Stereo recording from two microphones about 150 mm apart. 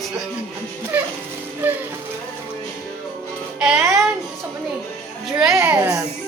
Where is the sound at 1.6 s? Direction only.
10° right (ahead or behind).